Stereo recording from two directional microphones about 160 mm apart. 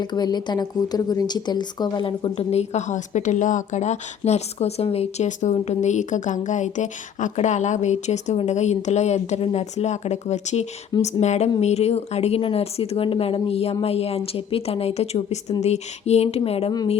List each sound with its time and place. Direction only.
0.0 s a woman's voice: 25° left (ahead or behind)